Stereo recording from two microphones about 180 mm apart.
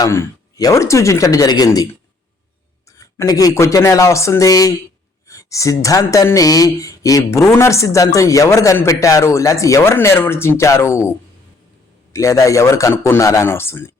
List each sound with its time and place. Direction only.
0.0 s speech: 15° left (ahead or behind)
3.2 s speech: 20° left (ahead or behind)
12.1 s speech: 15° left (ahead or behind)